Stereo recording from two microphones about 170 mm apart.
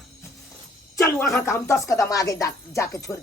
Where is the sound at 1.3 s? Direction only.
15° left (ahead or behind).